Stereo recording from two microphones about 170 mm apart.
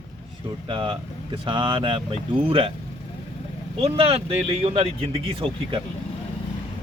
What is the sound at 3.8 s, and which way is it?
Speech, 35° right (ahead or behind).